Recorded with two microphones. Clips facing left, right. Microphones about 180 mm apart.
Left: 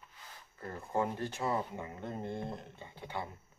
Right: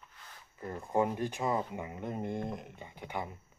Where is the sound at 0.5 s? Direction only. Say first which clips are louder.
Right 4 dB; 15° right (ahead or behind).